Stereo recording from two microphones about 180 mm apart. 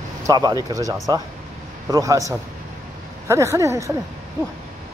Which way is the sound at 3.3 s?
15° right (ahead or behind).